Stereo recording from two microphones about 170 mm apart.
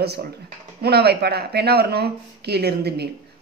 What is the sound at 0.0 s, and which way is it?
A woman's voice, 70° right (ahead or behind).